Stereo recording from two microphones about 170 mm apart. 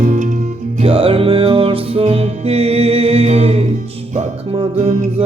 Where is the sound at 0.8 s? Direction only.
35° right (ahead or behind).